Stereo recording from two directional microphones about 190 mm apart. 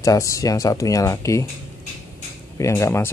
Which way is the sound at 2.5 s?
15° left (ahead or behind).